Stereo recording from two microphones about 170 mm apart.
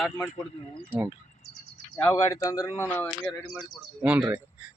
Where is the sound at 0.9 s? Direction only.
10° right (ahead or behind).